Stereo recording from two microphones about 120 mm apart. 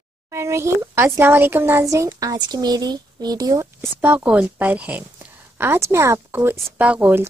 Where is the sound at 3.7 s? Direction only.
15° right (ahead or behind).